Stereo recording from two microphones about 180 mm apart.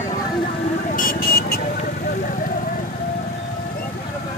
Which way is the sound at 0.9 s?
55° left (ahead or behind).